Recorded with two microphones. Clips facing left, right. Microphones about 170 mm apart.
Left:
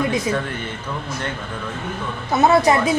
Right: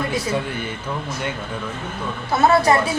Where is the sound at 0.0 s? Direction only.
15° left (ahead or behind).